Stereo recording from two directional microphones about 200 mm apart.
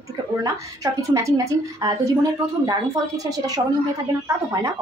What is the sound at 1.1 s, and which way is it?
Speech, 15° right (ahead or behind).